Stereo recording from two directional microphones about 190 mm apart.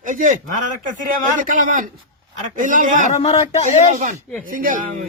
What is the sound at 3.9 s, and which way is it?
Speech, 50° right (ahead or behind).